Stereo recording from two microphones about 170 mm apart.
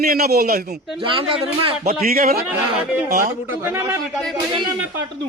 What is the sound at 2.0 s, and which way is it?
Speech, 60° right (ahead or behind).